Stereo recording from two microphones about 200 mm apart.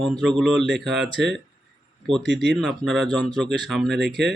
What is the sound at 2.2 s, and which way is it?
Speech, 60° right (ahead or behind).